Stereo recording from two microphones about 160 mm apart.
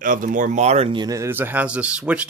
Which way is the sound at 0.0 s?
55° right (ahead or behind).